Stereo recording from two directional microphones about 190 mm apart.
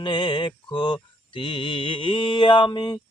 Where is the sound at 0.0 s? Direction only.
25° left (ahead or behind).